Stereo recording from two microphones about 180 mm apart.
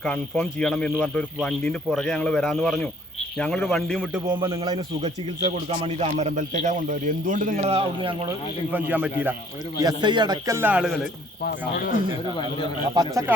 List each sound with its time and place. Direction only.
0.0 s speech: 5° left (ahead or behind)
4.3 s a man's voice: 25° right (ahead or behind)
5.8 s a man's voice: 40° right (ahead or behind)
8.7 s a man's voice: 10° right (ahead or behind)
9.8 s a man's voice: 25° right (ahead or behind); by 10.9 s 10° right (ahead or behind)
11.4 s speech: 55° left (ahead or behind)
12.9 s a man's voice: 20° right (ahead or behind)